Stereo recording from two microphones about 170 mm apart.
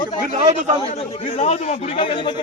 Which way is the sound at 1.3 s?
35° left (ahead or behind).